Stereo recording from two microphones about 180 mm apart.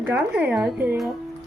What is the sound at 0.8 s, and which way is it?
Speech, centre (ahead or behind).